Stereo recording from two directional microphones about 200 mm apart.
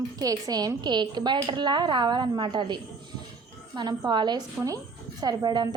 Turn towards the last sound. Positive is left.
turn(degrees=-20)  # may be behind; listen again after turning